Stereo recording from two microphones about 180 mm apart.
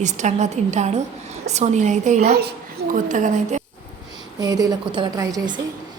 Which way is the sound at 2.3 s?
55° right (ahead or behind).